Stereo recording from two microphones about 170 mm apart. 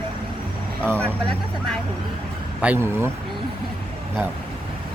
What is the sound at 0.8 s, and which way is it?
Speech, 10° left (ahead or behind).